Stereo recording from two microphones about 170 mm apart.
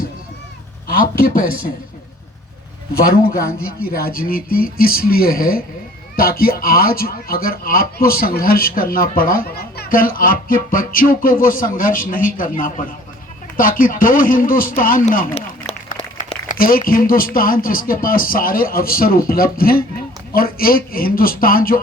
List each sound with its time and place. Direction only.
0.9 s a man's voice: 60° left (ahead or behind)
3.2 s a man's voice: 60° left (ahead or behind)